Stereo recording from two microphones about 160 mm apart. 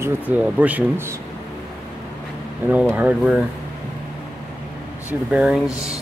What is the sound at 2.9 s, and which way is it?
Speech, 5° right (ahead or behind).